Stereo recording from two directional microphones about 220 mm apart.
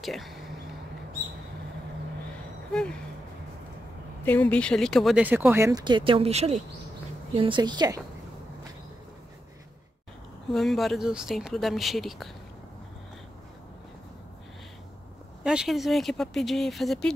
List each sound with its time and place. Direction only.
0.0 s speech: centre (ahead or behind)
2.7 s speech: 5° left (ahead or behind)
4.2 s a woman's voice: 10° left (ahead or behind); by 8.0 s 20° right (ahead or behind)
10.5 s speech: centre (ahead or behind)
15.4 s speech: 5° right (ahead or behind)